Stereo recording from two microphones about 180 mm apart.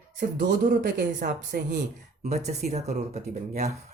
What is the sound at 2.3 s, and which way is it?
Speech, 40° right (ahead or behind).